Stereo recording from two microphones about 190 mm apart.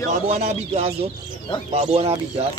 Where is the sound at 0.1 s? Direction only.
35° right (ahead or behind).